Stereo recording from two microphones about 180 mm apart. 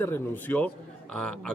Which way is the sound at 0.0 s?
10° left (ahead or behind).